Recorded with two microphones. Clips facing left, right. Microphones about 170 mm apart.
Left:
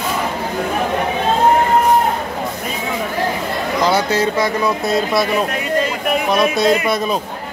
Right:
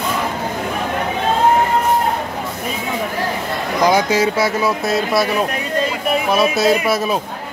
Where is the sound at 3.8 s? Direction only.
10° right (ahead or behind).